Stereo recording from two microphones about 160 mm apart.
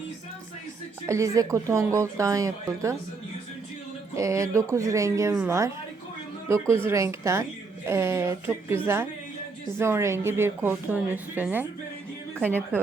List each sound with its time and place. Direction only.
1.0 s a woman's voice: 20° right (ahead or behind)
4.1 s a woman's voice: 20° right (ahead or behind)
5.3 s a woman's voice: 5° right (ahead or behind)